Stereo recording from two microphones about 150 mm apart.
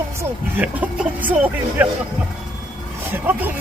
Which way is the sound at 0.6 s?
10° right (ahead or behind).